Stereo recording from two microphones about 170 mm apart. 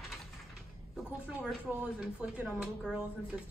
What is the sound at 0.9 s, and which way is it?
A woman's voice, 5° right (ahead or behind).